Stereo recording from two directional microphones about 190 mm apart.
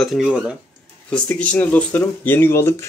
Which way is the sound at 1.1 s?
5° left (ahead or behind).